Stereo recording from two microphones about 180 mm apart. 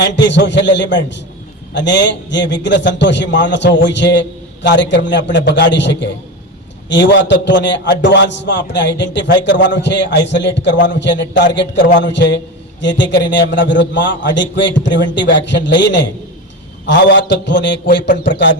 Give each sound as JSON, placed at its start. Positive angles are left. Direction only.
{"t": 0.0, "sound": "a man's voice", "side_deg": 80}